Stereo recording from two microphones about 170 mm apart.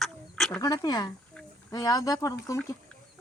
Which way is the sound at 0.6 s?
20° left (ahead or behind).